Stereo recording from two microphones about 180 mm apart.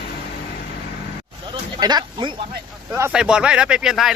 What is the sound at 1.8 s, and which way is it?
Speech, 20° right (ahead or behind).